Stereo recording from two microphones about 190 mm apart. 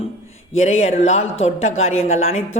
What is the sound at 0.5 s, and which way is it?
Speech, 35° left (ahead or behind).